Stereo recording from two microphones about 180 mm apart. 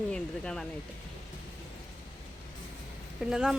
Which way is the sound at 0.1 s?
5° left (ahead or behind).